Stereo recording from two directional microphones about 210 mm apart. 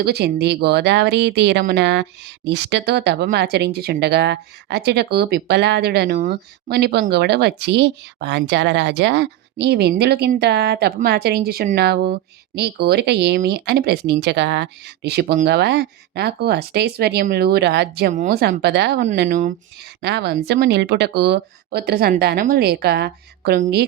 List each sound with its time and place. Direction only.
0.0 s speech: 50° right (ahead or behind)
18.1 s speech: 40° right (ahead or behind)
19.3 s speech: 40° right (ahead or behind)
20.0 s speech: 55° right (ahead or behind)